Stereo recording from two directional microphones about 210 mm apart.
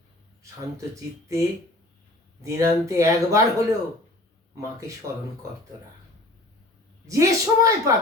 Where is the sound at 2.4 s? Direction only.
15° right (ahead or behind).